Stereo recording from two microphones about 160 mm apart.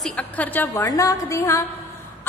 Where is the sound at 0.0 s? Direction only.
10° left (ahead or behind).